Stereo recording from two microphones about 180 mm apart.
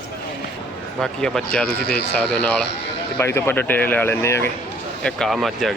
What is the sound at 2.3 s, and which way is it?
Speech, 5° left (ahead or behind).